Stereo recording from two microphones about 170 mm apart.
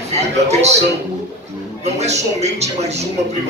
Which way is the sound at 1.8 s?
40° right (ahead or behind).